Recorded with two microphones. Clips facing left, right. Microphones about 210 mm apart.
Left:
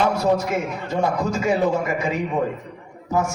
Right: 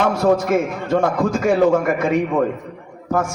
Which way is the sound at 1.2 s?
50° right (ahead or behind).